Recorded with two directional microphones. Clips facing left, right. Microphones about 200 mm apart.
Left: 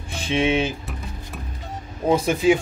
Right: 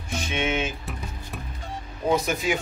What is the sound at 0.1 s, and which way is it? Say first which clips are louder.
Speech: left 6 dB; 30° left (ahead or behind).